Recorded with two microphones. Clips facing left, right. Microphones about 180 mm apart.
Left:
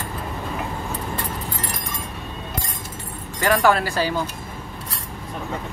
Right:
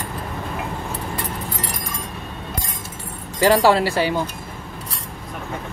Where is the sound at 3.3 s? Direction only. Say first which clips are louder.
Right 3 dB; 30° right (ahead or behind).